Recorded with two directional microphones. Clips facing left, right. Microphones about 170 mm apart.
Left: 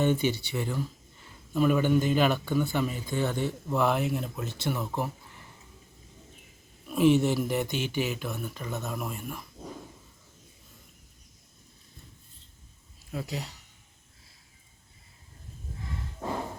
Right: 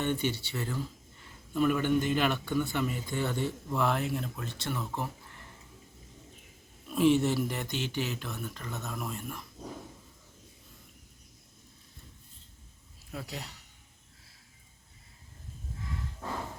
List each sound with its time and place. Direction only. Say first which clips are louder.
0.0 s speech: left 5 dB; 10° left (ahead or behind)
2.0 s speech: left 4 dB; 10° left (ahead or behind)
2.8 s speech: left 3 dB; 25° left (ahead or behind); by 4.9 s 5° left (ahead or behind)
6.9 s speech: left 2 dB; 10° left (ahead or behind)
7.2 s speech: left 3 dB; centre (ahead or behind)
13.1 s speech: left 5 dB; centre (ahead or behind)